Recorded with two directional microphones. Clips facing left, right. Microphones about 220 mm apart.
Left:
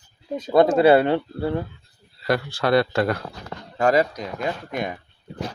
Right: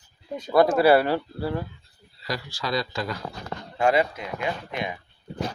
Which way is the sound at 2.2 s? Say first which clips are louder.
Left 9 dB; 60° left (ahead or behind).